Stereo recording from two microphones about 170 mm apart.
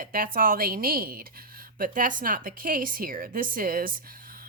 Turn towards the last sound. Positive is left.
turn(degrees=-55)  # may be behind; listen again after turning